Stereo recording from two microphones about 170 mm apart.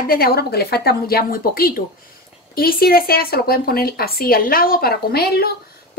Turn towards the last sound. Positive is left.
turn(degrees=65)  # may be behind; listen again after turning